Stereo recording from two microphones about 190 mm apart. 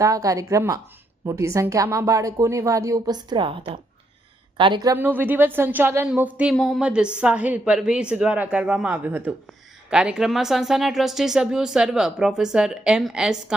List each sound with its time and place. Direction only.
0.0 s a woman's voice: 20° right (ahead or behind); by 13.3 s centre (ahead or behind)